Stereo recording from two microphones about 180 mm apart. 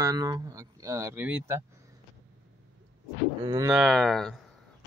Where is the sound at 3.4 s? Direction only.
20° right (ahead or behind).